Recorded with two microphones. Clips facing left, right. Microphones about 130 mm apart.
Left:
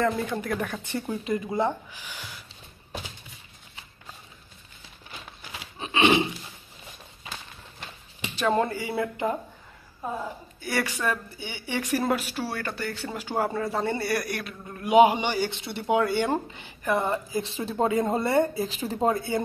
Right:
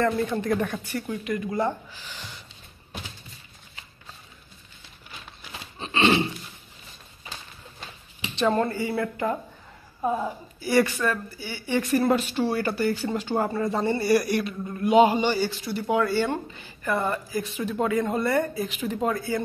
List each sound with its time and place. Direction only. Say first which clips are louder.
0.2 s speech: right 4 dB; centre (ahead or behind)
0.8 s speech: even; 25° left (ahead or behind); by 2.4 s 10° left (ahead or behind)
5.8 s a sound: even; 10° left (ahead or behind)
8.5 s a man's voice: right 1 dB; 10° left (ahead or behind)
10.6 s speech: right 7 dB; centre (ahead or behind)
10.9 s a man's voice: right 2 dB; 15° left (ahead or behind)
13.2 s a man's voice: left 3 dB; 10° left (ahead or behind); by 19.4 s 25° left (ahead or behind)